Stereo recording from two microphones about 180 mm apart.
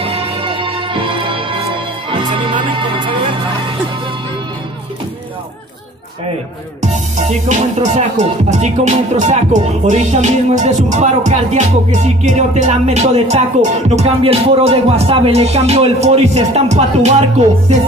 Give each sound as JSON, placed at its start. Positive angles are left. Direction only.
{"t": 0.0, "sound": "music", "side_deg": -30}
{"t": 6.8, "sound": "music", "side_deg": -40}